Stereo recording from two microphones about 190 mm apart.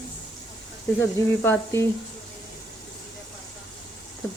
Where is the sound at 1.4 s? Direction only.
10° left (ahead or behind).